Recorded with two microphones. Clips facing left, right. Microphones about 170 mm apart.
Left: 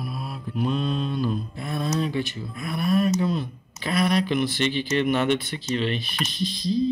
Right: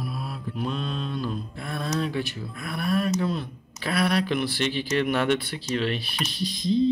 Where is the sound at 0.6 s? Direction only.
Centre (ahead or behind).